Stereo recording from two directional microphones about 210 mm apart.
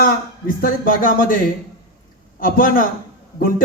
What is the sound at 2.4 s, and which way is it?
Speech, 40° left (ahead or behind).